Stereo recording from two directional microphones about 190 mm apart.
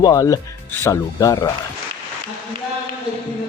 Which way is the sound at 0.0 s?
20° left (ahead or behind).